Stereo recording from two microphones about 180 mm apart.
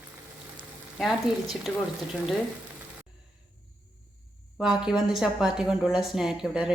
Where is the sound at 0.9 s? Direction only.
Centre (ahead or behind).